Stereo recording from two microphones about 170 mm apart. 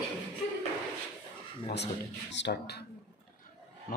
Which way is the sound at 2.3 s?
85° left.